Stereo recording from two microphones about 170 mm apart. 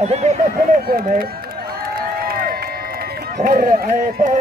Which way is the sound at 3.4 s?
55° right (ahead or behind).